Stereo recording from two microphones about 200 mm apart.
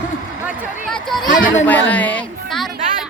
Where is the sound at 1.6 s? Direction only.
10° left (ahead or behind).